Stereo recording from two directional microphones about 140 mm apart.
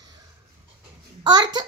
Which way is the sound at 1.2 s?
30° right (ahead or behind).